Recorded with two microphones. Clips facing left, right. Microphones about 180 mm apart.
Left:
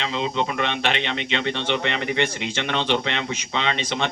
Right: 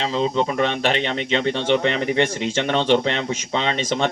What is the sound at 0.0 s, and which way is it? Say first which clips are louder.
Speech: right 4 dB; 40° right (ahead or behind).